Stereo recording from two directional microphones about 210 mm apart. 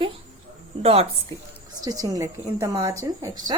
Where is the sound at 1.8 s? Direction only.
15° right (ahead or behind).